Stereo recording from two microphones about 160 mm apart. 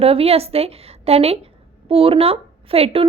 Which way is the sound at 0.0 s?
40° right (ahead or behind).